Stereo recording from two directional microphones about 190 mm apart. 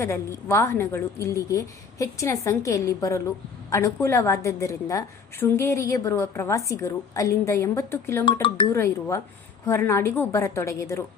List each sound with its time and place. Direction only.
0.0 s a woman's voice: 15° left (ahead or behind)
8.2 s speech: 25° left (ahead or behind)
8.7 s a woman's voice: 15° left (ahead or behind)